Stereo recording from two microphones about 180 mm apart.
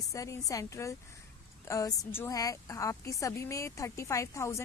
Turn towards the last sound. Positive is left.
turn(degrees=15)  # may be behind; listen again after turning